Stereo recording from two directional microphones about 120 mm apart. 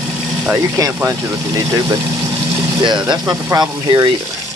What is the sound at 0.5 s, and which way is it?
Speech, 25° right (ahead or behind).